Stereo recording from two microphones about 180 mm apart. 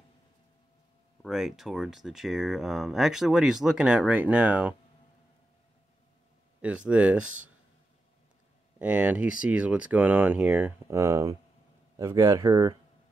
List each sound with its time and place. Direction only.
1.2 s speech: centre (ahead or behind)
6.6 s speech: 5° right (ahead or behind)
8.7 s speech: 5° right (ahead or behind)